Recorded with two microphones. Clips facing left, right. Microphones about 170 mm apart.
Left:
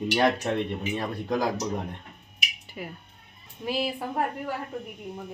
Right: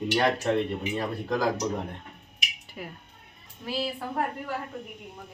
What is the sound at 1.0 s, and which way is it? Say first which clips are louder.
Speech: left 1 dB; 15° left (ahead or behind).